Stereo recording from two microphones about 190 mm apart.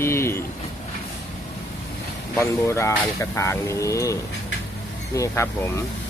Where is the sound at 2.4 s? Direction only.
15° left (ahead or behind).